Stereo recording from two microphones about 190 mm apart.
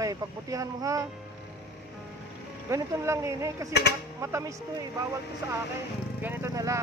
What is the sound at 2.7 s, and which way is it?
Speech, 15° right (ahead or behind).